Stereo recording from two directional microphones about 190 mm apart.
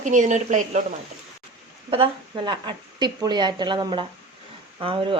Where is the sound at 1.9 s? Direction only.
25° right (ahead or behind).